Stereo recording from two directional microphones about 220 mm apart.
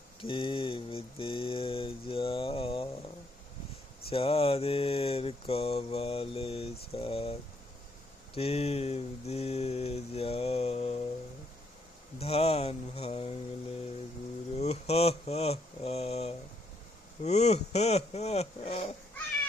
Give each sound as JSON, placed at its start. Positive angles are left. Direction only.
{"t": 0.2, "sound": "mantra", "side_deg": 25}
{"t": 4.1, "sound": "mantra", "side_deg": 25}
{"t": 8.4, "sound": "mantra", "side_deg": 30}
{"t": 12.2, "sound": "mantra", "side_deg": 25}
{"t": 14.6, "sound": "speech", "side_deg": 30}
{"t": 17.2, "sound": "mantra", "side_deg": 30}